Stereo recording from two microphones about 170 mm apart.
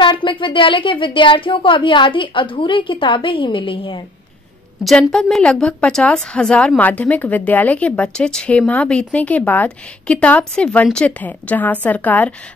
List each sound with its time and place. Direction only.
0.0 s speech: 30° left (ahead or behind)
4.8 s a woman's voice: centre (ahead or behind)